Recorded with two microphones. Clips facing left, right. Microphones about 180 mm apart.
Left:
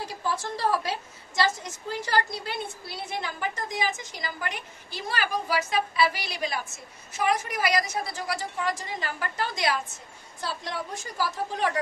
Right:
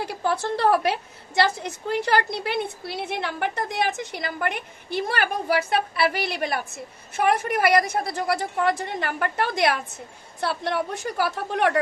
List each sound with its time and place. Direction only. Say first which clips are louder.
0.0 s a woman's voice: right 5 dB; 65° right (ahead or behind)